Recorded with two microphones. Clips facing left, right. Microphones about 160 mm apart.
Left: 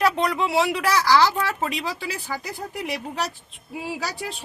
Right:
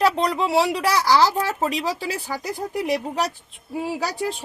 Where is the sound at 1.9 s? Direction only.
40° right (ahead or behind).